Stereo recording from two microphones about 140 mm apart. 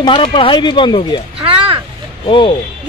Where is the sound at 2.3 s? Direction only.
35° left (ahead or behind).